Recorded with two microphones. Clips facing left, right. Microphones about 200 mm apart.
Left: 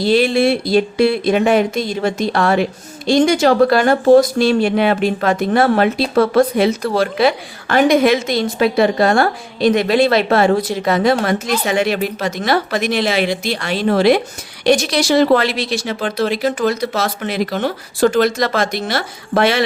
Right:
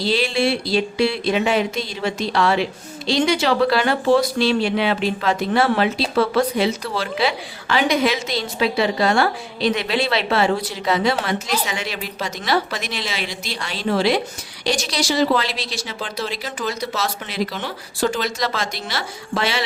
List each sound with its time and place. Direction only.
0.0 s speech: 50° left (ahead or behind)